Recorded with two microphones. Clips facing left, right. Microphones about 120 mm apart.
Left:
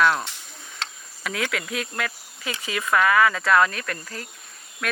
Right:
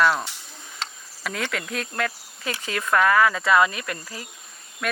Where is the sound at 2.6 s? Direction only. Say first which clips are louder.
Even; 5° left (ahead or behind).